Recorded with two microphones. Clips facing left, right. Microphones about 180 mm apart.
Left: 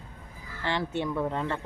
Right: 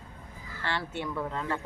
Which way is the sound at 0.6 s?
20° left (ahead or behind).